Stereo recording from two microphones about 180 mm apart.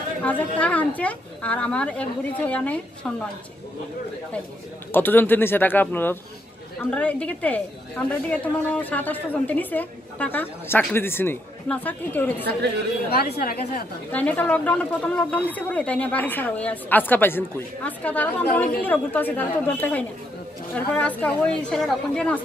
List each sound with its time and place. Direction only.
0.2 s a woman's voice: 10° left (ahead or behind)
4.9 s a woman's voice: 10° left (ahead or behind)
13.1 s a woman's voice: 55° left (ahead or behind)
14.1 s a woman's voice: 10° left (ahead or behind)